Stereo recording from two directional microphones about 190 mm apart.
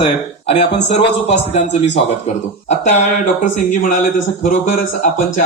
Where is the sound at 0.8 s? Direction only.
35° left (ahead or behind).